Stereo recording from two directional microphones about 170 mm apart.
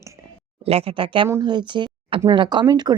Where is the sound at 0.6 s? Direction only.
35° right (ahead or behind).